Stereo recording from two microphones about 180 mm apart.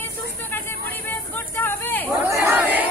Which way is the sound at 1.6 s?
10° left (ahead or behind).